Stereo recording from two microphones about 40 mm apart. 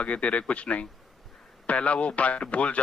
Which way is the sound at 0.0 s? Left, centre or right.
Left.